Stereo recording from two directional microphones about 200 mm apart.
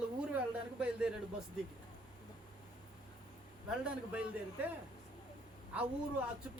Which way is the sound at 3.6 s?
5° right (ahead or behind).